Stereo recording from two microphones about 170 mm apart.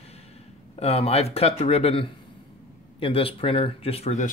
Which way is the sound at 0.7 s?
35° left (ahead or behind).